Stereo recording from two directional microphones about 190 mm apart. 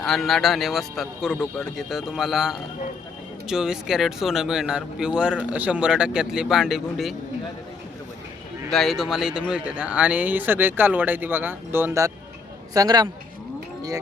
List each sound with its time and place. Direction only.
0.0 s speech: centre (ahead or behind)
8.7 s a man's voice: centre (ahead or behind); by 13.1 s 20° right (ahead or behind)